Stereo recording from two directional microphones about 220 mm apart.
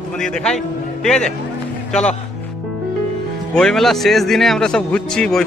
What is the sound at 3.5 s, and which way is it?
Speech, centre (ahead or behind).